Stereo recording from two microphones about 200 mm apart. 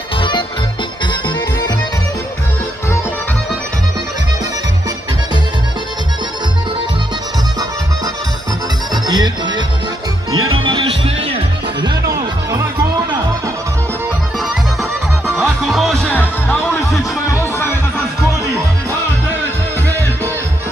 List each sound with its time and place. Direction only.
8.9 s music: 20° right (ahead or behind)
10.3 s music: 90° right
10.6 s music: 25° right (ahead or behind)
14.4 s music: centre (ahead or behind)